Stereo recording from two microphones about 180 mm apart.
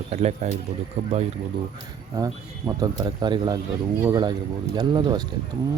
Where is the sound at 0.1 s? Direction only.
35° right (ahead or behind).